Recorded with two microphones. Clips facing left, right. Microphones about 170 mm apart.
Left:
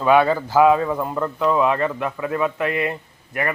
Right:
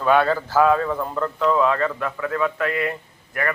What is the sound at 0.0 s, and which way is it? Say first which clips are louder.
A man's voice: left 2 dB; 10° left (ahead or behind).